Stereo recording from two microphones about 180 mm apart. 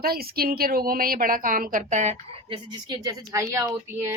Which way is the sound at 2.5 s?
25° right (ahead or behind).